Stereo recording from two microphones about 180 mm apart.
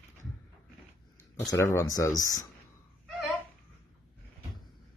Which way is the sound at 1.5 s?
15° left (ahead or behind).